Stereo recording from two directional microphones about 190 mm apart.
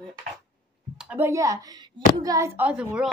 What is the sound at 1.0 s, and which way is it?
Speech, 10° right (ahead or behind).